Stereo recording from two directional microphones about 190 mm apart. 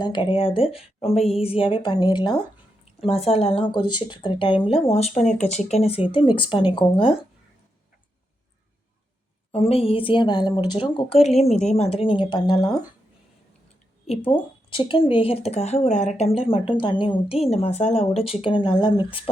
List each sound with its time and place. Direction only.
0.0 s a woman's voice: 25° left (ahead or behind)
9.5 s a woman's voice: 30° left (ahead or behind)
14.1 s a woman's voice: 30° left (ahead or behind)